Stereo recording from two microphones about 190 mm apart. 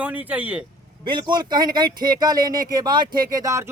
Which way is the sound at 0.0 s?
10° right (ahead or behind).